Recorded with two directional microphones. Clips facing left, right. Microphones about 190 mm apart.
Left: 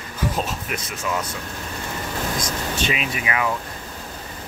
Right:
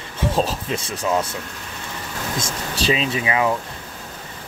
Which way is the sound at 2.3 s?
30° right (ahead or behind).